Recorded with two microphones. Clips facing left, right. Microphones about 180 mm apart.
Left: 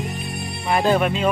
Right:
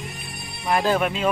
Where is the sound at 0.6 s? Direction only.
Centre (ahead or behind).